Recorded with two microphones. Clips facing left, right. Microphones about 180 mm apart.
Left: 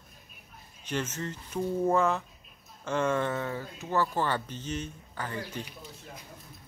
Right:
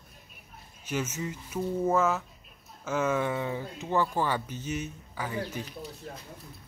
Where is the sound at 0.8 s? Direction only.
10° right (ahead or behind).